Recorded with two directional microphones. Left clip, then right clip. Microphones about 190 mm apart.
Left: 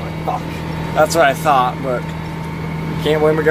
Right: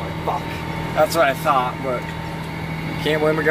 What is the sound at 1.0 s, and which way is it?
Speech, 15° left (ahead or behind).